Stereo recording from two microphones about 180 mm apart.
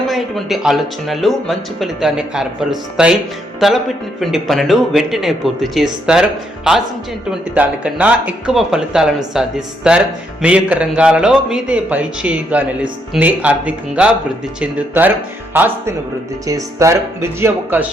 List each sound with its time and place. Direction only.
0.1 s speech: centre (ahead or behind)
7.5 s a man's voice: 5° right (ahead or behind)